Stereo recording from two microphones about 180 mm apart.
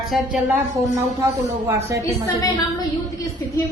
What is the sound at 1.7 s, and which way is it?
Speech, 15° right (ahead or behind).